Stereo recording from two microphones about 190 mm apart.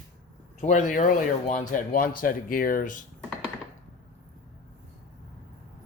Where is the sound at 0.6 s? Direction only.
40° left (ahead or behind).